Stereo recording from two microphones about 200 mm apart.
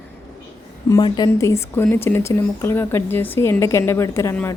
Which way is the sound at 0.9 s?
20° left (ahead or behind).